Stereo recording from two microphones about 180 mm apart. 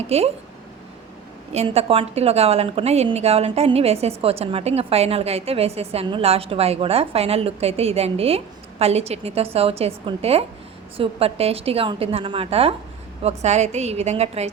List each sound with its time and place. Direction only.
0.1 s a woman's voice: 35° right (ahead or behind)
1.5 s a woman's voice: 35° right (ahead or behind)